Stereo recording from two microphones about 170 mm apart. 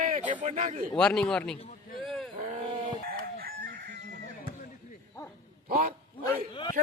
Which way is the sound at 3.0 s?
60° right (ahead or behind).